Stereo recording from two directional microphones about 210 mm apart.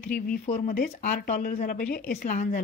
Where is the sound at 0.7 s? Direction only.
40° left (ahead or behind).